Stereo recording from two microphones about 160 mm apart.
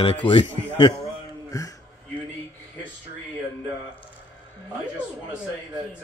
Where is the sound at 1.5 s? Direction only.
20° left (ahead or behind).